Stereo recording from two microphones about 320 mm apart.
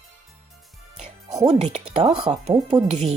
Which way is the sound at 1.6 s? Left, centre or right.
Centre.